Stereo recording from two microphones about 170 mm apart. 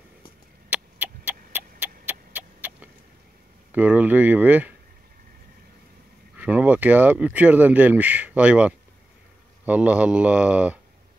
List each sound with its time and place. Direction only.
0.7 s a sound: 10° right (ahead or behind)
3.7 s speech: 10° right (ahead or behind)
6.3 s speech: 10° right (ahead or behind)